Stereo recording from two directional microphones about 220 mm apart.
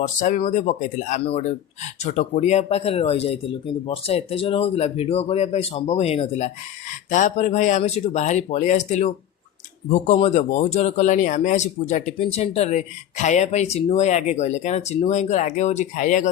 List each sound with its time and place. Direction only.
0.0 s speech: 35° left (ahead or behind)